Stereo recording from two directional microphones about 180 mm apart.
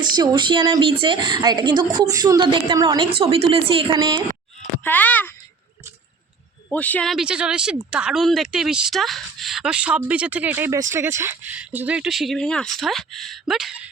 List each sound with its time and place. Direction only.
0.0 s a woman's voice: 25° right (ahead or behind)
4.8 s speech: 10° left (ahead or behind)
6.7 s speech: 10° left (ahead or behind)